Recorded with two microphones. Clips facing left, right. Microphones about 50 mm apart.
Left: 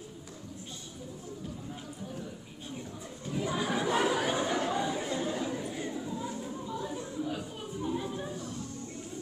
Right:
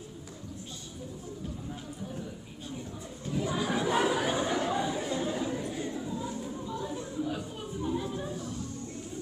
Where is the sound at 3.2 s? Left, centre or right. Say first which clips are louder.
Right 1 dB; centre.